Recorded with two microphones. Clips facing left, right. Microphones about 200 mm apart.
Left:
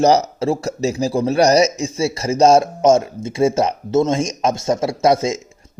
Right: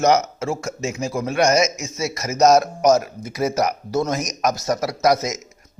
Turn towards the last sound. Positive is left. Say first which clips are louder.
# left 6 dB
turn(degrees=30)  # may be behind; listen again after turning